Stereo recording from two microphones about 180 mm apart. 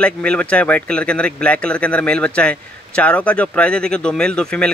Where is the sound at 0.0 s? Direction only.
5° left (ahead or behind).